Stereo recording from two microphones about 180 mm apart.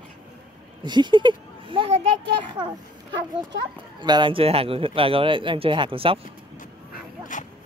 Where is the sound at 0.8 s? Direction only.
25° right (ahead or behind).